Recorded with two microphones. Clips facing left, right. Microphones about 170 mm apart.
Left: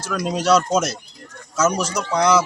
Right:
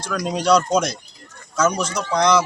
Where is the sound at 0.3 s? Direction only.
5° left (ahead or behind).